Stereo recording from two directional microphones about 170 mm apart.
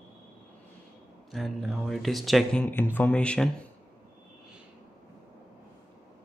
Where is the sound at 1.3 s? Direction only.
Centre (ahead or behind).